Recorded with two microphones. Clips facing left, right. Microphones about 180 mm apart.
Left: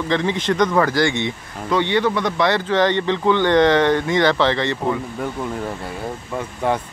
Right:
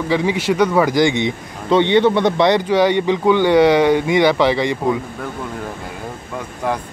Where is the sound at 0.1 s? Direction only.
10° right (ahead or behind).